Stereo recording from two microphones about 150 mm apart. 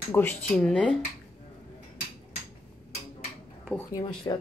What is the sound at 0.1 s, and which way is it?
Speech, 10° left (ahead or behind).